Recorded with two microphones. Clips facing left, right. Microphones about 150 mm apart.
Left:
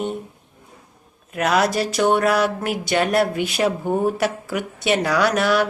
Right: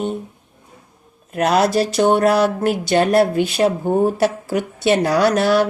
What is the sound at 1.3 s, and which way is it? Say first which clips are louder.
Speech: right 3 dB; 30° right (ahead or behind).